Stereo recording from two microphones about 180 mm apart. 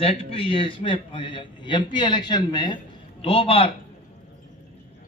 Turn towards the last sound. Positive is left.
turn(degrees=30)  # may be behind; listen again after turning